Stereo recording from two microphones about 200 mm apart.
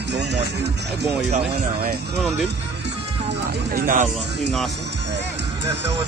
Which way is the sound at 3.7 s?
45° right (ahead or behind).